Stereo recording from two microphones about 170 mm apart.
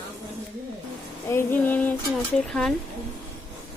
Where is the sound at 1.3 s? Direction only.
10° left (ahead or behind).